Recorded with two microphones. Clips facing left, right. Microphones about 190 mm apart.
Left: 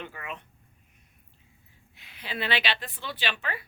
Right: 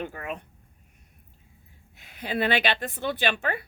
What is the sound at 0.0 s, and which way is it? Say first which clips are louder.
Speech: right 6 dB; 45° right (ahead or behind).